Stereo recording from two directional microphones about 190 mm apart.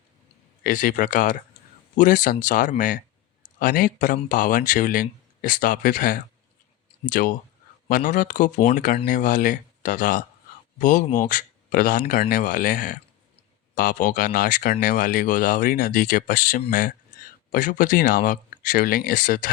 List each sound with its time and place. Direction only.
0.6 s speech: 45° left (ahead or behind)